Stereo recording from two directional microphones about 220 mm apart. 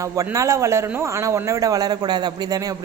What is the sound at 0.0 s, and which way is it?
A man's voice, 15° right (ahead or behind).